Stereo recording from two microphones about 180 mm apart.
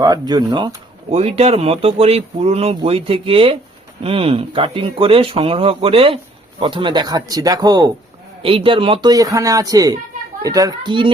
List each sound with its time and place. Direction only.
0.0 s speech: 20° right (ahead or behind)